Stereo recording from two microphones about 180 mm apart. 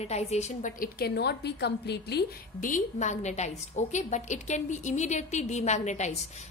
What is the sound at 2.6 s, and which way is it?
A woman's voice, 45° left (ahead or behind).